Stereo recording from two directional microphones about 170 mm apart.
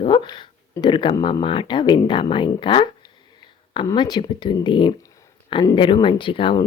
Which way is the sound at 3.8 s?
25° left (ahead or behind).